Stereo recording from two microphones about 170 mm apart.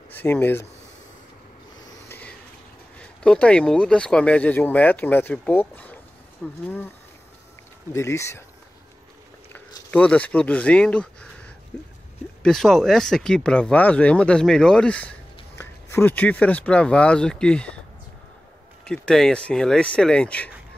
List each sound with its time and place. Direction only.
0.2 s speech: 10° left (ahead or behind)
2.0 s a sound: 10° left (ahead or behind)
3.0 s speech: 5° left (ahead or behind)
7.9 s speech: 15° left (ahead or behind)
9.5 s speech: 10° left (ahead or behind)
18.9 s speech: 5° left (ahead or behind)